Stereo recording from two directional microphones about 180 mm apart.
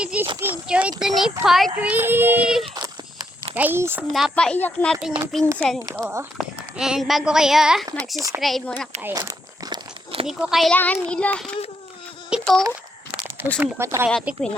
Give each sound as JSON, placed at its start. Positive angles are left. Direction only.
{"t": 0.0, "sound": "a child's voice", "side_deg": -5}
{"t": 2.7, "sound": "a sound", "side_deg": -25}
{"t": 3.5, "sound": "a child's voice", "side_deg": -10}
{"t": 4.1, "sound": "speech", "side_deg": 0}
{"t": 5.8, "sound": "speech", "side_deg": -15}
{"t": 7.9, "sound": "speech", "side_deg": -20}
{"t": 8.4, "sound": "speech", "side_deg": 0}
{"t": 9.0, "sound": "crumpling", "side_deg": -15}
{"t": 10.2, "sound": "speech", "side_deg": -5}
{"t": 13.6, "sound": "a child's voice", "side_deg": -15}